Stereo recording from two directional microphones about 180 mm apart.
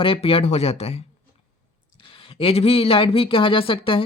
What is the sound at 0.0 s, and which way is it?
Speech, 30° left (ahead or behind).